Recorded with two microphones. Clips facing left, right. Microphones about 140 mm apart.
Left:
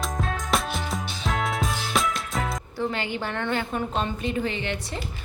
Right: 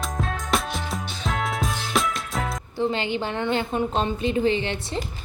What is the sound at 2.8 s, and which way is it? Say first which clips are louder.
A woman's voice: right 4 dB; 25° right (ahead or behind).